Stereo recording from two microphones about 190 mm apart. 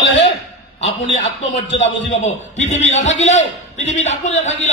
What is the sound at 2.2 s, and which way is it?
A man's voice, 35° left (ahead or behind).